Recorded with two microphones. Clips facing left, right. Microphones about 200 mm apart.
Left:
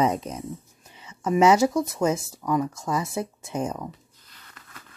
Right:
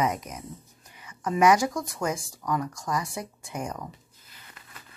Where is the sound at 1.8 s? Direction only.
20° left (ahead or behind).